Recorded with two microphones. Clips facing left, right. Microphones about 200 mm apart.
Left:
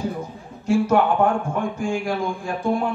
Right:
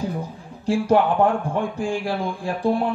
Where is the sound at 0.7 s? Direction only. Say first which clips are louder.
Even; 35° right (ahead or behind).